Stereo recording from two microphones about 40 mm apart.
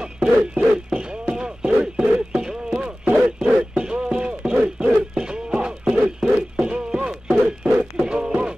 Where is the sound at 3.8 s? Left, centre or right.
Right.